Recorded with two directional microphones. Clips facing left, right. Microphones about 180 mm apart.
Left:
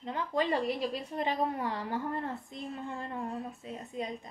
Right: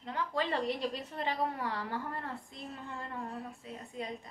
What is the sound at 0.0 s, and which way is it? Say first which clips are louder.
A woman's voice: left 3 dB; 20° left (ahead or behind).